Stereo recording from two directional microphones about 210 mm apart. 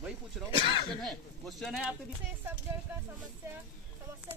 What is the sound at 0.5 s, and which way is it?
Speech, 25° left (ahead or behind).